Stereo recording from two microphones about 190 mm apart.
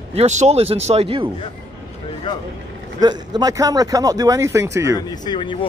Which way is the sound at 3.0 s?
20° right (ahead or behind).